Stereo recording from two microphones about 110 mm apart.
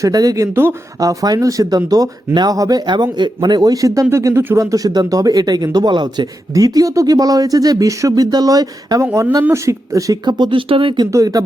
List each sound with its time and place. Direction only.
0.0 s speech: 35° right (ahead or behind)
0.5 s speech: 20° right (ahead or behind)
0.9 s speech: 35° right (ahead or behind)
10.2 s speech: 40° right (ahead or behind)
11.1 s speech: 30° right (ahead or behind)